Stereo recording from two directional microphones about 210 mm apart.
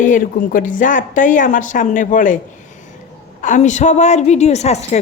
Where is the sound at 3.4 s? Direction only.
35° left (ahead or behind).